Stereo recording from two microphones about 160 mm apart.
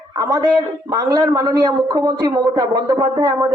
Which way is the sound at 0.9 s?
20° right (ahead or behind).